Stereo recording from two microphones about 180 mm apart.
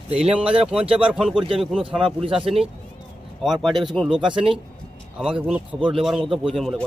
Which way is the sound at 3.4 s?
Centre (ahead or behind).